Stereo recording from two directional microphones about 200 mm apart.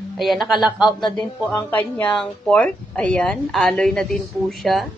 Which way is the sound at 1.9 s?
5° left (ahead or behind).